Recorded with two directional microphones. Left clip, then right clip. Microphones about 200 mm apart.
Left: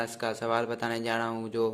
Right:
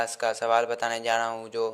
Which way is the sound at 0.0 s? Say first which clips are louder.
Right 5 dB; 20° right (ahead or behind).